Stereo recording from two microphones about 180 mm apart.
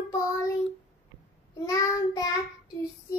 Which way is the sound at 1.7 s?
20° left (ahead or behind).